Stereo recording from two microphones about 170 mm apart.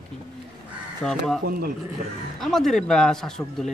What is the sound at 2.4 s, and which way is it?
Speech, centre (ahead or behind).